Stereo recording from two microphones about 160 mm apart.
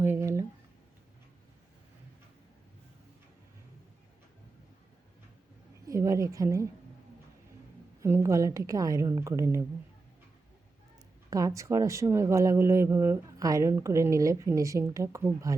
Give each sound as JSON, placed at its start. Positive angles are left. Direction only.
{"t": 0.0, "sound": "a sound", "side_deg": -15}
{"t": 5.9, "sound": "speech", "side_deg": -20}
{"t": 8.0, "sound": "speech", "side_deg": -15}
{"t": 11.3, "sound": "speech", "side_deg": -20}